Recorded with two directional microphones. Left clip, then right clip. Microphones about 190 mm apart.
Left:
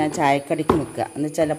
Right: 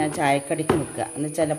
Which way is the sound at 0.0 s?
20° left (ahead or behind).